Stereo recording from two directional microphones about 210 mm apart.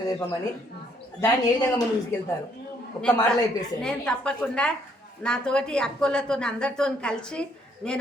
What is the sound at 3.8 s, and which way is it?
A woman's voice, 5° left (ahead or behind).